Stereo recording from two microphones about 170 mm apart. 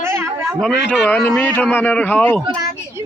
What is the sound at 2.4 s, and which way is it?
Speech, 25° right (ahead or behind).